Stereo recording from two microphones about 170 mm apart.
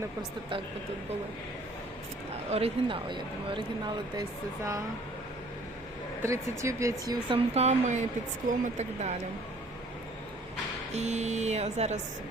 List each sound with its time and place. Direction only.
2.5 s speech: 35° right (ahead or behind); by 4.8 s 20° right (ahead or behind)
6.2 s speech: 15° right (ahead or behind)
7.5 s speech: 40° right (ahead or behind)
10.9 s speech: 40° right (ahead or behind)